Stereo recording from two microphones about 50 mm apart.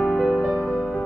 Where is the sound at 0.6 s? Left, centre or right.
Centre.